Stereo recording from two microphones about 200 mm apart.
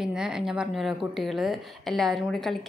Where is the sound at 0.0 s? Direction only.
5° right (ahead or behind).